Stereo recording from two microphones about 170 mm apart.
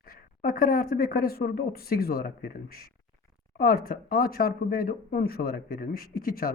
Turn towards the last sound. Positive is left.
turn(degrees=60)  # may be behind; listen again after turning